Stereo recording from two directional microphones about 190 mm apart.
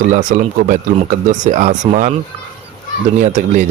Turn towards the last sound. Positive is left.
turn(degrees=-40)  # may be behind; listen again after turning